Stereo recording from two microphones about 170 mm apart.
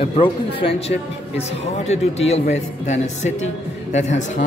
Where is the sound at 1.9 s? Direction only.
40° left (ahead or behind).